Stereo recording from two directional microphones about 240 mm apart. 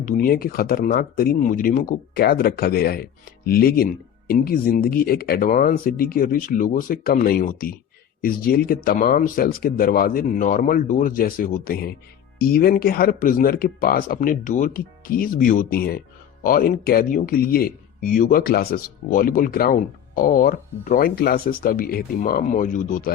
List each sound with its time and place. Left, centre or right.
0.0 s speech: left